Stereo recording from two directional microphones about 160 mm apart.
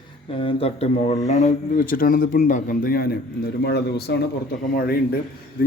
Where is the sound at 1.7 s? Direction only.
65° left (ahead or behind).